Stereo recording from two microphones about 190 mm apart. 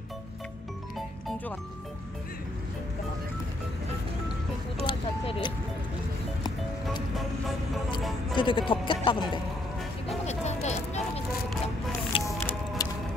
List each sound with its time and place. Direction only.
4.8 s a sound: 25° left (ahead or behind)
7.2 s vehicle: centre (ahead or behind)
8.4 s music: 25° left (ahead or behind)
12.3 s music: 15° left (ahead or behind)